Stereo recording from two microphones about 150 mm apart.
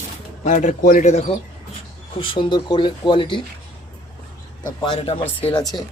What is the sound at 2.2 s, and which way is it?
Speech, 35° left (ahead or behind).